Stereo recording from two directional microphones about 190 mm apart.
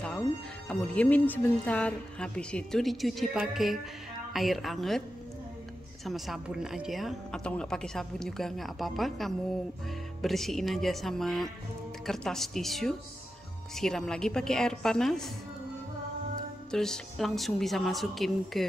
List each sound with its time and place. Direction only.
0.7 s a woman's voice: 5° left (ahead or behind)
6.0 s a woman's voice: centre (ahead or behind)
16.7 s a woman's voice: 5° left (ahead or behind)